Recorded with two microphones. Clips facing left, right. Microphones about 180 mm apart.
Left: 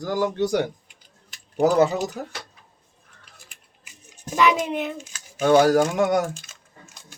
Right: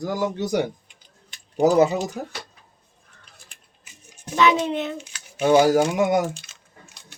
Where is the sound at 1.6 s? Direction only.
15° right (ahead or behind).